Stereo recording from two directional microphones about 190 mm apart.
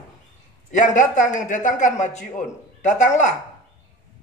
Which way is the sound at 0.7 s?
40° left (ahead or behind).